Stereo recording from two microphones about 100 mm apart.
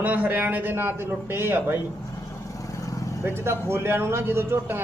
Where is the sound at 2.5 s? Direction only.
35° left (ahead or behind).